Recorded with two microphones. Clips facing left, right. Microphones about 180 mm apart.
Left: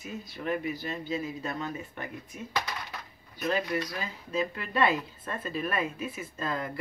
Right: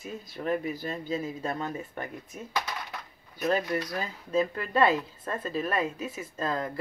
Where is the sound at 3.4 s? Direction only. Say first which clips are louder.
Right 2 dB; 40° right (ahead or behind).